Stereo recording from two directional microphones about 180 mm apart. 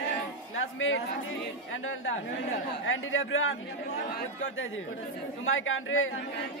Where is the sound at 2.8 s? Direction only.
90° left.